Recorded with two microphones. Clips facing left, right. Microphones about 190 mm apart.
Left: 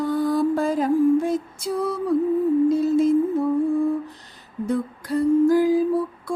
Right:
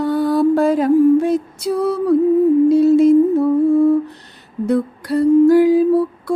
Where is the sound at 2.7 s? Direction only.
70° right (ahead or behind).